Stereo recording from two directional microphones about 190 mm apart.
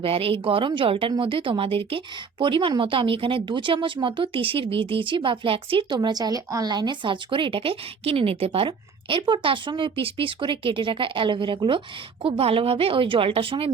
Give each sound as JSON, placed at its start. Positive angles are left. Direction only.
{"t": 0.0, "sound": "speech", "side_deg": -30}